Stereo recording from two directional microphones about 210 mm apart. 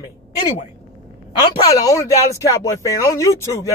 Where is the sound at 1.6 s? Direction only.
15° left (ahead or behind).